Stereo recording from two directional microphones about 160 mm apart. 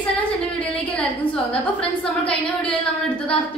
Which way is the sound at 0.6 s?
5° left (ahead or behind).